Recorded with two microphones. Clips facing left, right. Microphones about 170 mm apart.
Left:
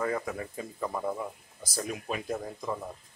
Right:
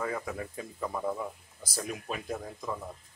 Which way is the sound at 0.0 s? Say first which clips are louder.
Left 3 dB; 5° right (ahead or behind).